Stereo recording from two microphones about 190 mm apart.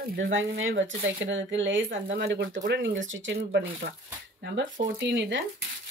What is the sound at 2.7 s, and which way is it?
Speech, 75° right (ahead or behind).